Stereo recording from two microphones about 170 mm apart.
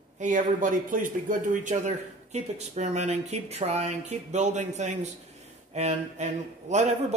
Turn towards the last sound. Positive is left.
turn(degrees=-45)  # may be behind; listen again after turning